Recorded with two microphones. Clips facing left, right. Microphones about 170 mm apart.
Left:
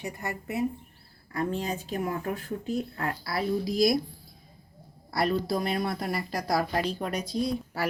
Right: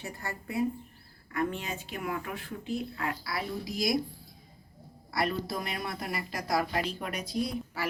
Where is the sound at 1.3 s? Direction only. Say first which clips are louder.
Left 3 dB; 35° left (ahead or behind).